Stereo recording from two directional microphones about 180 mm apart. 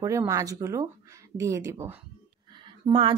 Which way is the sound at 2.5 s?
25° right (ahead or behind).